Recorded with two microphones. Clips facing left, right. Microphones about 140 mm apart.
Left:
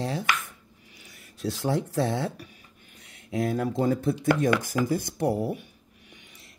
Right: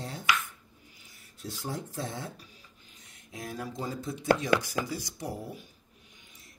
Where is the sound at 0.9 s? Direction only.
75° left (ahead or behind).